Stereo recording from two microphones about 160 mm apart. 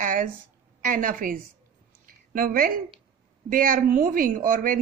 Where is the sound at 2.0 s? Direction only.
60° right (ahead or behind).